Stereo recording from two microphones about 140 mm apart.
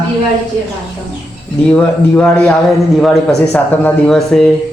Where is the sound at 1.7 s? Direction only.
5° left (ahead or behind).